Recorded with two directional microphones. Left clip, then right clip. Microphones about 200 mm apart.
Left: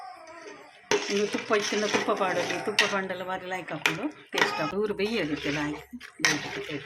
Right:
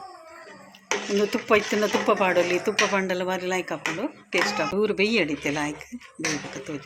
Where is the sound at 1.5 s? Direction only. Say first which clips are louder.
Right 6 dB; 25° right (ahead or behind).